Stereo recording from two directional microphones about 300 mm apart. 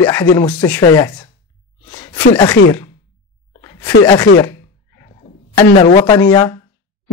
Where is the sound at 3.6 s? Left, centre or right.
Centre.